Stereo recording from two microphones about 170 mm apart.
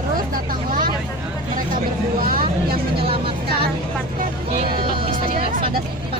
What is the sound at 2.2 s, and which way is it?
Vehicle, 60° right (ahead or behind).